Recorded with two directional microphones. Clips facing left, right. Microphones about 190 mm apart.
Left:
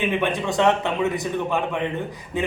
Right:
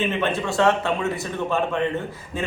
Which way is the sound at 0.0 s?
15° left (ahead or behind).